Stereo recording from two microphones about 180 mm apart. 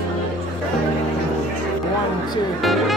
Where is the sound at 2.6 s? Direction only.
Centre (ahead or behind).